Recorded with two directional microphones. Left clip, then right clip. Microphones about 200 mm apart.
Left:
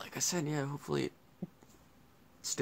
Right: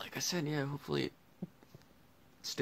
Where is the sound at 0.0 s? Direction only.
Centre (ahead or behind).